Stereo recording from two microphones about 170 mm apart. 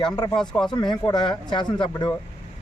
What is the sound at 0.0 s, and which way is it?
Speech, 25° left (ahead or behind).